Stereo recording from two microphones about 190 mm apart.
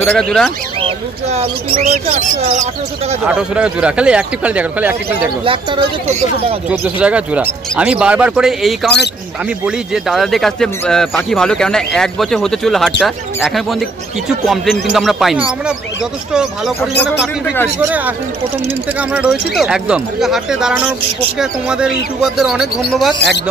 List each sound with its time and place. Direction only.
0.0 s speech: 5° left (ahead or behind)
0.7 s speech: 30° right (ahead or behind)
3.3 s speech: 5° right (ahead or behind)
5.4 s speech: 25° right (ahead or behind)
6.7 s speech: 10° right (ahead or behind)